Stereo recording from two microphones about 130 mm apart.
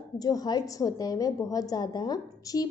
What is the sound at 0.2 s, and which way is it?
A woman's voice, 30° left (ahead or behind).